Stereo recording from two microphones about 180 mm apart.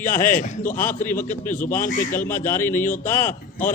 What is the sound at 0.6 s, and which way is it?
A man's voice, 45° left (ahead or behind).